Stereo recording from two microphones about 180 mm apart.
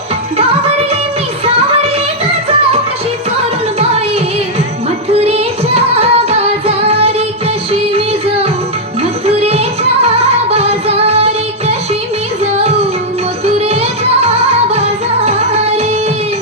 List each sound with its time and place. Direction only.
5.1 s music: 35° right (ahead or behind)
13.4 s music: 35° right (ahead or behind)